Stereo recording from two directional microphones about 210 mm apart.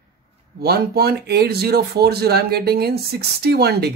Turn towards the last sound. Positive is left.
turn(degrees=-50)  # may be behind; listen again after turning